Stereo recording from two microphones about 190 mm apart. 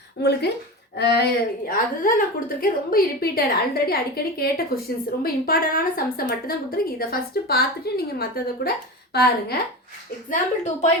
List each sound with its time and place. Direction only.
0.2 s a woman's voice: 60° left (ahead or behind)
1.6 s a woman's voice: 50° left (ahead or behind)
10.2 s speech: 40° left (ahead or behind)